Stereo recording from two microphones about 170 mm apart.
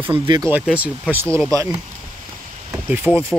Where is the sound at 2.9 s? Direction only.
10° right (ahead or behind).